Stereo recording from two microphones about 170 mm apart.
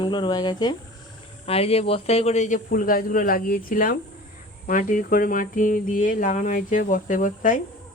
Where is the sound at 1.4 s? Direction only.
35° left (ahead or behind); by 7.6 s 50° left (ahead or behind).